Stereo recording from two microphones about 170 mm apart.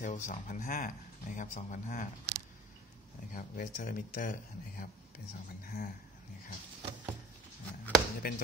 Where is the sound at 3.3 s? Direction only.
55° left (ahead or behind).